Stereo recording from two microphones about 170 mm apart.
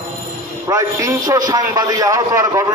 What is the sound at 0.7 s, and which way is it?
A man's voice, 20° right (ahead or behind).